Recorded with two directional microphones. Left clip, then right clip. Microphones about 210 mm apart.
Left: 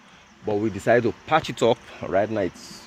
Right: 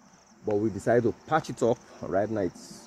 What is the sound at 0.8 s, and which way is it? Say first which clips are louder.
Speech: left 6 dB; 20° left (ahead or behind).